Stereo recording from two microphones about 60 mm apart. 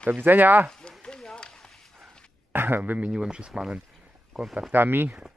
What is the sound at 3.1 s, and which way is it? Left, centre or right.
Speech, centre.